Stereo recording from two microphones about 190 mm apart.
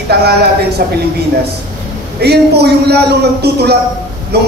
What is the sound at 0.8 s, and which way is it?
Speech, 55° right (ahead or behind).